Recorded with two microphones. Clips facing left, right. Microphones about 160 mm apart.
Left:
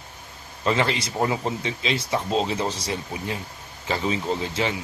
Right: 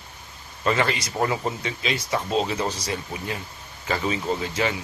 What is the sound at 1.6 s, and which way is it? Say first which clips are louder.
Speech: left 1 dB; 25° left (ahead or behind).